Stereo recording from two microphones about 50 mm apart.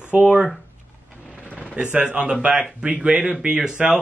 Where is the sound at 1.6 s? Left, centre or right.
Centre.